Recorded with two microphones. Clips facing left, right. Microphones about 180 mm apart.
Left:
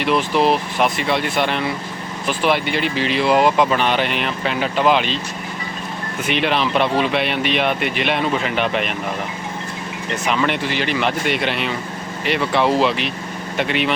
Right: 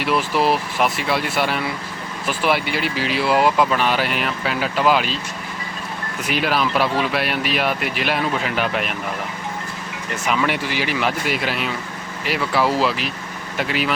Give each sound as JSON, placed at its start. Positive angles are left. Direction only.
{"t": 0.0, "sound": "speech", "side_deg": -5}
{"t": 6.2, "sound": "speech", "side_deg": -5}
{"t": 10.2, "sound": "speech", "side_deg": -5}